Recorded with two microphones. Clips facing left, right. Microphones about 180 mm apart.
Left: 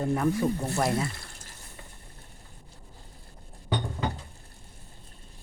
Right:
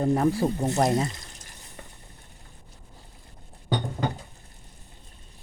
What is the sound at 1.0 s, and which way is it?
Water, 20° right (ahead or behind).